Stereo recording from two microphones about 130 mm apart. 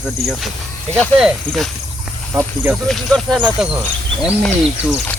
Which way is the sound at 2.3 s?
20° right (ahead or behind).